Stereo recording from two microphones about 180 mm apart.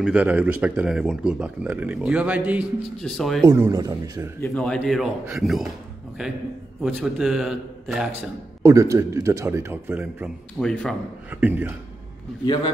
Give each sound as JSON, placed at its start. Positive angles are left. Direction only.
{"t": 0.0, "sound": "speech", "side_deg": -10}
{"t": 3.4, "sound": "speech", "side_deg": -15}
{"t": 4.4, "sound": "speech", "side_deg": 5}
{"t": 8.6, "sound": "speech", "side_deg": -15}
{"t": 10.6, "sound": "speech", "side_deg": 5}
{"t": 11.2, "sound": "speech", "side_deg": -10}